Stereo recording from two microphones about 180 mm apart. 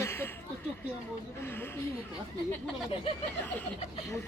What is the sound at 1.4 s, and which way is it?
Speech, 10° left (ahead or behind).